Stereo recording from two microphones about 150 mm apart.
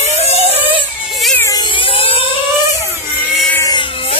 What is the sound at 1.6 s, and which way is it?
Vehicle, 35° left (ahead or behind).